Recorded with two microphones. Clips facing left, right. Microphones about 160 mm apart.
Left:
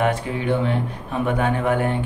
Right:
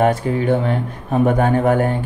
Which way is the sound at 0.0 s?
40° right (ahead or behind).